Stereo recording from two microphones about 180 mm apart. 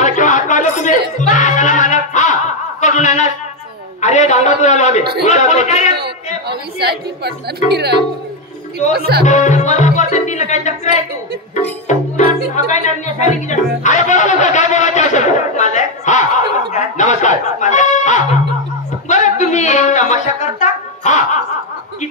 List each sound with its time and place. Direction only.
0.0 s a sound: 45° left (ahead or behind)
1.2 s music: 45° left (ahead or behind)
2.8 s a man's voice: 40° left (ahead or behind)
5.9 s music: 65° right (ahead or behind)
7.7 s speech: 65° right (ahead or behind)
9.2 s music: 40° left (ahead or behind)
11.9 s music: 45° left (ahead or behind)
16.7 s snicker: 40° left (ahead or behind)
19.0 s a sound: 40° left (ahead or behind)